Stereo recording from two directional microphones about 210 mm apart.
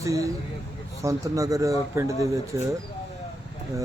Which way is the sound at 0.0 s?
15° right (ahead or behind).